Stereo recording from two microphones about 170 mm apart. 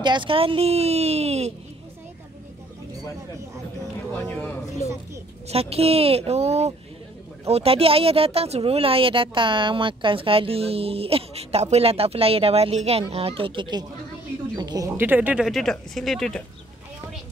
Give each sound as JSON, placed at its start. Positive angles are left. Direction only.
{"t": 0.0, "sound": "speech", "side_deg": -25}
{"t": 4.3, "sound": "a man's voice", "side_deg": 5}
{"t": 5.5, "sound": "speech", "side_deg": -35}
{"t": 15.0, "sound": "speech", "side_deg": -10}